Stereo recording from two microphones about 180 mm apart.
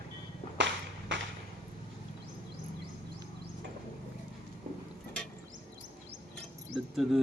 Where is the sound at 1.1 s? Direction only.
90° right.